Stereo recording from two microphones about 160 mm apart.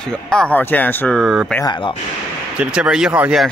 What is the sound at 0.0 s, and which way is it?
Speech, 5° left (ahead or behind).